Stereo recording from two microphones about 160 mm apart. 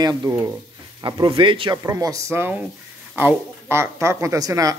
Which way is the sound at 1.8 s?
20° right (ahead or behind).